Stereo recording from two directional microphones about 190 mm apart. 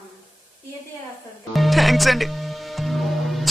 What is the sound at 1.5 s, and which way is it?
Speech, centre (ahead or behind).